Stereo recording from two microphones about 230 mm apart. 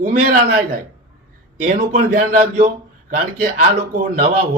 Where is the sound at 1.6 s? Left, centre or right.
Right.